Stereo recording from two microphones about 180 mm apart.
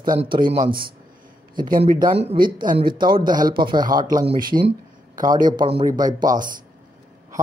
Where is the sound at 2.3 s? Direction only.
50° right (ahead or behind).